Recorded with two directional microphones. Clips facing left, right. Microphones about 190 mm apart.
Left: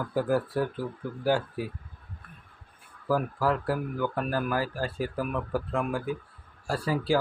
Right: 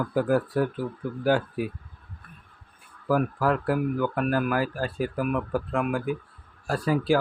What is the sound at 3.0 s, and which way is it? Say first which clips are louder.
Speech: right 3 dB; 15° right (ahead or behind).